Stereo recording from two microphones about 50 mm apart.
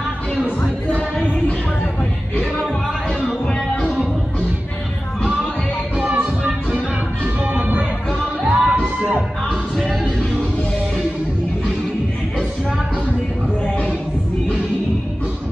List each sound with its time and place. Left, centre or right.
3.8 s music: centre
5.9 s music: right
8.5 s music: centre